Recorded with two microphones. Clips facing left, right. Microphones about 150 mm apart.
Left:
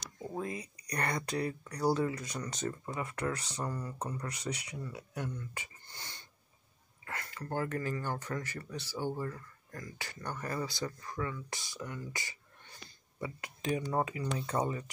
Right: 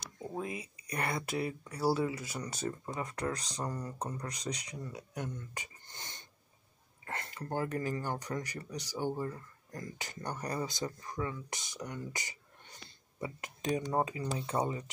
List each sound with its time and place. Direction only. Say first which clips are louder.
0.4 s speech: left 1 dB; 10° right (ahead or behind)
3.0 s speech: left 1 dB; 35° right (ahead or behind)
3.4 s speech: even; 15° right (ahead or behind)
3.8 s speech: even; 35° right (ahead or behind)
4.9 s speech: even; 20° right (ahead or behind)
5.5 s a sound: even; 20° right (ahead or behind)
7.1 s speech: right 1 dB; 25° right (ahead or behind)
14.4 s speech: even; 15° right (ahead or behind)